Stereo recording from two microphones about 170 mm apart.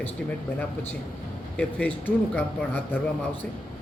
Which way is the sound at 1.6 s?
10° left (ahead or behind).